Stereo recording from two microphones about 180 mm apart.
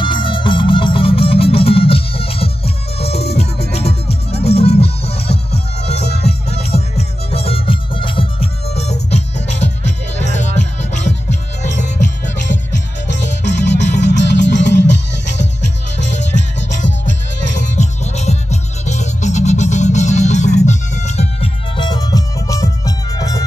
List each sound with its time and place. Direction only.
0.0 s music: 25° left (ahead or behind)
3.1 s music: 65° left (ahead or behind)
4.4 s music: 35° left (ahead or behind)
13.1 s music: 75° left (ahead or behind)
13.8 s music: 40° left (ahead or behind)
14.1 s music: 80° left
17.7 s music: 40° left (ahead or behind)
21.7 s music: 25° left (ahead or behind)